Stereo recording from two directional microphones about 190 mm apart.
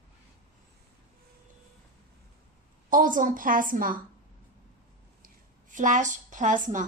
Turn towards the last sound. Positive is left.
turn(degrees=-40)  # may be behind; listen again after turning